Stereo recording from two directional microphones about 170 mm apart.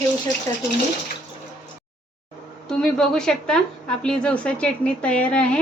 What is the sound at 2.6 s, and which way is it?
A woman's voice, 5° left (ahead or behind).